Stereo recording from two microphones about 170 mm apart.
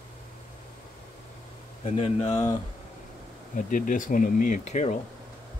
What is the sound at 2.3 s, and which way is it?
Speech, 25° left (ahead or behind).